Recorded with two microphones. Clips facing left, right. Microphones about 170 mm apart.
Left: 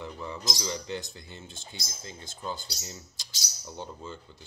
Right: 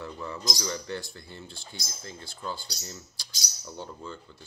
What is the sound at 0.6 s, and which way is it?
Speech, 20° left (ahead or behind).